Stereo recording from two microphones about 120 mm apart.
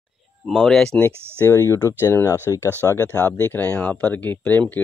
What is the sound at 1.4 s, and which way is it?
Speech, 25° left (ahead or behind).